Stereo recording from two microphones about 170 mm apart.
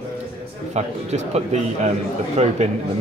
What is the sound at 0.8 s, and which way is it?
A man's voice, 40° right (ahead or behind).